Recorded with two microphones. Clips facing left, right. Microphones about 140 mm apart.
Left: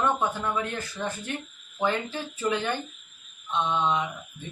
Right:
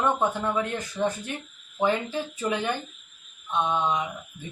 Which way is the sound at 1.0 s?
15° right (ahead or behind).